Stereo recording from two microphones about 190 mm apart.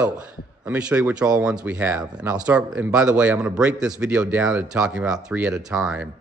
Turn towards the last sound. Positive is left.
turn(degrees=-5)  # may be behind; listen again after turning